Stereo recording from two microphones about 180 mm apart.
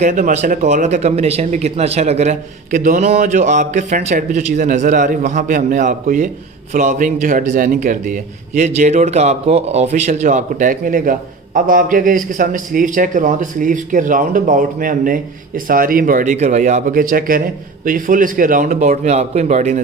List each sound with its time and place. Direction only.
0.0 s speech: 45° right (ahead or behind)